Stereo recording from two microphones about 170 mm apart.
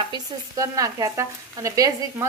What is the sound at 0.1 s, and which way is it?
Speech, 20° right (ahead or behind).